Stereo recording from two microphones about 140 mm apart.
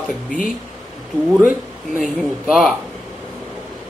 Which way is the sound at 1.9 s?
Centre (ahead or behind).